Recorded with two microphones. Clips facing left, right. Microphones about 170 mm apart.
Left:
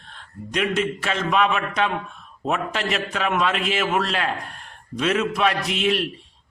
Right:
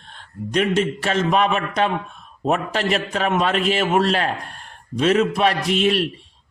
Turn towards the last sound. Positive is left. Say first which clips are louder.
# right 4 dB
turn(degrees=-40)  # may be behind; listen again after turning